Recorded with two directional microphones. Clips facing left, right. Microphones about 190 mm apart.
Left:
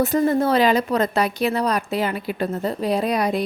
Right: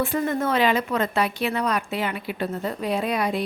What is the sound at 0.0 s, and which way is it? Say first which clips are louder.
A woman's voice: left 5 dB; 40° left (ahead or behind).